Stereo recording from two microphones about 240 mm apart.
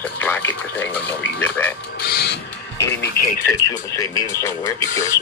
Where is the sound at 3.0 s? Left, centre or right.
Left.